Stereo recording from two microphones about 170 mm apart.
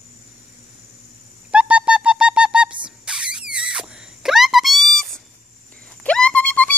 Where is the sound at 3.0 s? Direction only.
5° right (ahead or behind).